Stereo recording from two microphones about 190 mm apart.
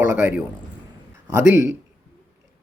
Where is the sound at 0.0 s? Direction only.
15° right (ahead or behind).